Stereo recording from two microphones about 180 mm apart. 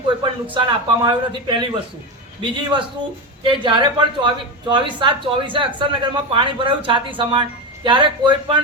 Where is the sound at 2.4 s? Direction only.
25° right (ahead or behind).